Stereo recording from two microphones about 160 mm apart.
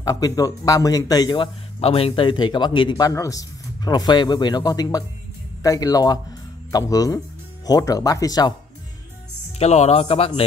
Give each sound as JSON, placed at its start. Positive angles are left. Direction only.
{"t": 0.0, "sound": "a man's voice", "side_deg": 25}
{"t": 3.1, "sound": "a man's voice", "side_deg": 20}
{"t": 9.6, "sound": "speech", "side_deg": 45}